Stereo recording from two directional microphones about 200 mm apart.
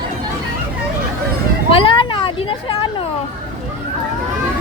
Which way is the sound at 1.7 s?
25° left (ahead or behind).